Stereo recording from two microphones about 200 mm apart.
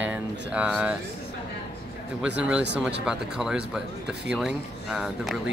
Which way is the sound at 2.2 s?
5° right (ahead or behind).